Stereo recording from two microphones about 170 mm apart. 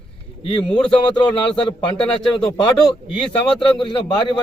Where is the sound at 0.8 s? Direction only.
30° left (ahead or behind).